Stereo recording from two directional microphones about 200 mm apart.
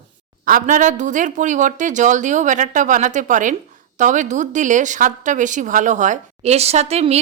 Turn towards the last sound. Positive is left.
turn(degrees=-30)  # may be behind; listen again after turning